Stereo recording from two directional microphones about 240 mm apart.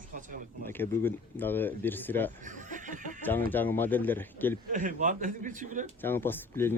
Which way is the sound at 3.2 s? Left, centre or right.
Centre.